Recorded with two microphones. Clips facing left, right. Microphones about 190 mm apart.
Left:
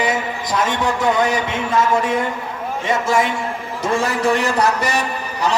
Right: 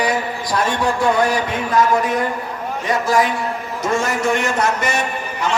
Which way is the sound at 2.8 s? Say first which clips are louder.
Right 1 dB; 25° left (ahead or behind).